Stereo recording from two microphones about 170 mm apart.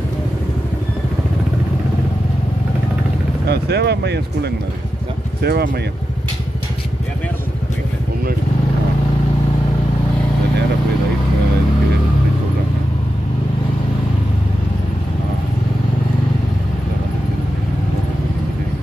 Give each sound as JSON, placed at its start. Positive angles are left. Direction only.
{"t": 3.4, "sound": "speech", "side_deg": -75}